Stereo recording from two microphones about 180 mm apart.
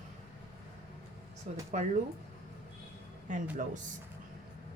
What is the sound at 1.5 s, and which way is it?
Speech, 40° right (ahead or behind).